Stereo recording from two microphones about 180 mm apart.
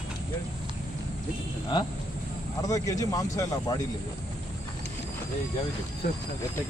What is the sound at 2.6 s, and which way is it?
Speech, 20° left (ahead or behind).